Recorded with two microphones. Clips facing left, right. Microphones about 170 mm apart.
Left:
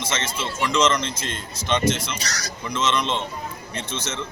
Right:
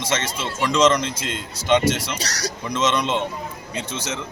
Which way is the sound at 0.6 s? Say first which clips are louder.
Right 3 dB; 15° right (ahead or behind).